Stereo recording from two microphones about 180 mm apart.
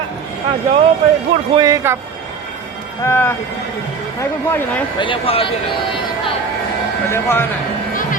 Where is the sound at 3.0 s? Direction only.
15° left (ahead or behind).